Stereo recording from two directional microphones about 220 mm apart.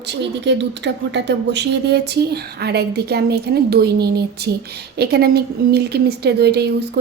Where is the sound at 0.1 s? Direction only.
50° right (ahead or behind).